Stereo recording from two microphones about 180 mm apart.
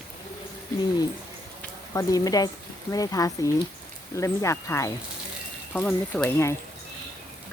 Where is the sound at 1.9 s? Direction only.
20° left (ahead or behind).